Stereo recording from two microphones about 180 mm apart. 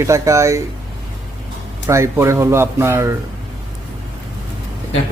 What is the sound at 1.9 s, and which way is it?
A man's voice, 15° right (ahead or behind).